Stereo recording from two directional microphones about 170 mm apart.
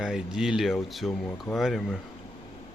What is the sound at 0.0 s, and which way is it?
Speech, 5° right (ahead or behind).